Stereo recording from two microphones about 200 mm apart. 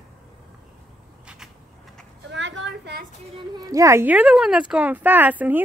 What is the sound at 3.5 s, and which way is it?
Speech, 15° right (ahead or behind).